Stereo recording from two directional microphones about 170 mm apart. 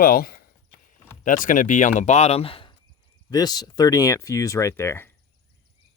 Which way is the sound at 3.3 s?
25° left (ahead or behind).